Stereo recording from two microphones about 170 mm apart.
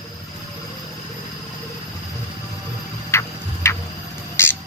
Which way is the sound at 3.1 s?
15° left (ahead or behind).